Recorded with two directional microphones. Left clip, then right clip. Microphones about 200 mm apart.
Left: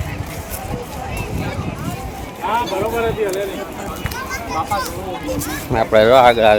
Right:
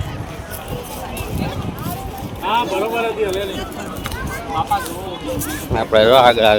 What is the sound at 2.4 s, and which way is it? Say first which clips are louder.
Speech: right 1 dB; 35° right (ahead or behind).